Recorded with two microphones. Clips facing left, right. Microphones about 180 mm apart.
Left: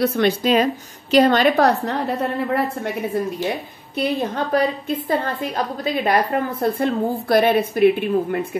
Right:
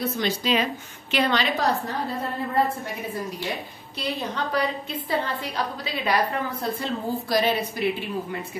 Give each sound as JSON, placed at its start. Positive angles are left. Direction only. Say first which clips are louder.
{"t": 0.0, "sound": "a woman's voice", "louder": "left 8 dB", "side_deg": 65}
{"t": 4.0, "sound": "a woman's voice", "louder": "left 7 dB", "side_deg": 50}